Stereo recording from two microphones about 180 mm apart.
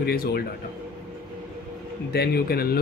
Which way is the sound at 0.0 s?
60° left (ahead or behind).